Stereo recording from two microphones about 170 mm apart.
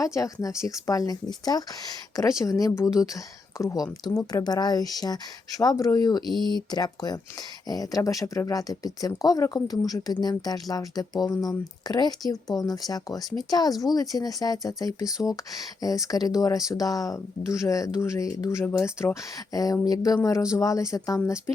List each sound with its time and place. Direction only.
0.0 s speech: 20° left (ahead or behind)